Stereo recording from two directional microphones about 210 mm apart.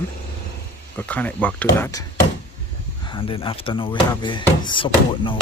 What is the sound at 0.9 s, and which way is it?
Speech, 5° left (ahead or behind).